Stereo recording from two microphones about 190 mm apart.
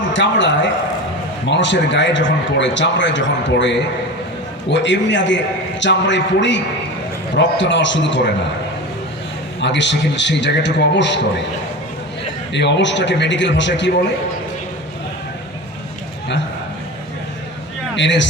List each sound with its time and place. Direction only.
0.1 s a man's voice: 70° left (ahead or behind)
9.6 s a man's voice: 70° left (ahead or behind)
12.5 s a man's voice: 65° left (ahead or behind)
17.9 s speech: 70° left (ahead or behind)